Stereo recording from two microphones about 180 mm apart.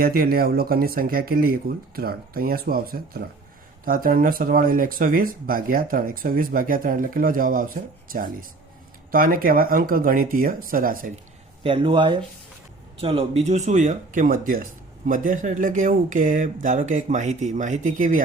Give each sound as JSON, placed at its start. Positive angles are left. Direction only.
{"t": 0.0, "sound": "speech", "side_deg": -55}
{"t": 11.6, "sound": "speech", "side_deg": -30}